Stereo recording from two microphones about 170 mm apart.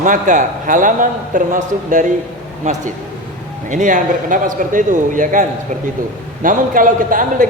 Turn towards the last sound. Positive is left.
turn(degrees=-50)  # may be behind; listen again after turning